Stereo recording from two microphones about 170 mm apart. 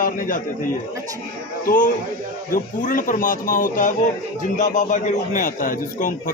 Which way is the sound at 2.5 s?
55° left (ahead or behind).